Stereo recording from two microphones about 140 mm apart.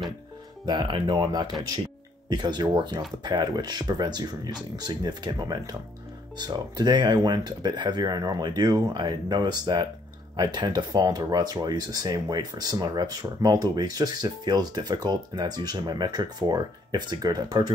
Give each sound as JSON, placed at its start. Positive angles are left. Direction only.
{"t": 0.7, "sound": "speech", "side_deg": -35}